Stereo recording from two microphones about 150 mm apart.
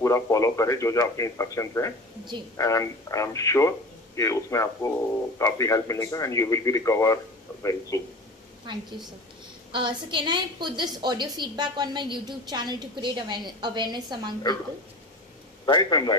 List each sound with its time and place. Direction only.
0.0 s speech: 20° left (ahead or behind)
9.7 s a woman's voice: 30° right (ahead or behind)
15.6 s speech: 30° left (ahead or behind)